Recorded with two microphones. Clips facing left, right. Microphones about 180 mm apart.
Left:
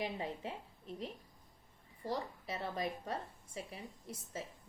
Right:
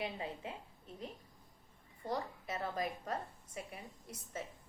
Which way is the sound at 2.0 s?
30° left (ahead or behind).